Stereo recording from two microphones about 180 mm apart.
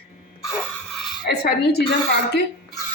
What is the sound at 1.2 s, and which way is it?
Speech, 60° left (ahead or behind).